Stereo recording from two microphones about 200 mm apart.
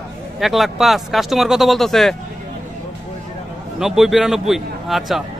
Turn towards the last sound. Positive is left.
turn(degrees=0)  # may be behind; listen again after turning